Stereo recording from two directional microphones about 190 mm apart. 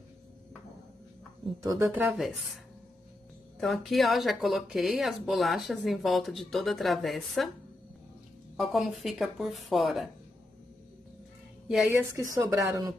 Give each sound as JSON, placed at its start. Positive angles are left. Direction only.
{"t": 1.6, "sound": "speech", "side_deg": -15}
{"t": 3.5, "sound": "speech", "side_deg": 0}
{"t": 8.5, "sound": "speech", "side_deg": 0}
{"t": 11.7, "sound": "speech", "side_deg": 0}
{"t": 12.4, "sound": "speech", "side_deg": -20}